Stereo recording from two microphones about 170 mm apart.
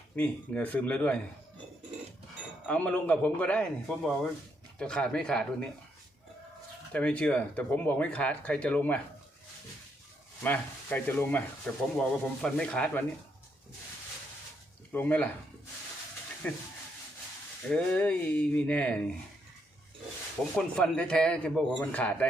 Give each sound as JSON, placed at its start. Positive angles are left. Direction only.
{"t": 0.2, "sound": "speech", "side_deg": 10}
{"t": 2.6, "sound": "a man's voice", "side_deg": 10}
{"t": 6.9, "sound": "speech", "side_deg": 10}
{"t": 10.4, "sound": "speech", "side_deg": 10}
{"t": 14.9, "sound": "speech", "side_deg": 10}
{"t": 16.4, "sound": "speech", "side_deg": 10}
{"t": 17.7, "sound": "speech", "side_deg": 5}
{"t": 20.6, "sound": "a man's voice", "side_deg": 5}